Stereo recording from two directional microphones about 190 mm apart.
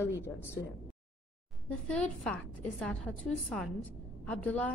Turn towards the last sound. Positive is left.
turn(degrees=10)  # may be behind; listen again after turning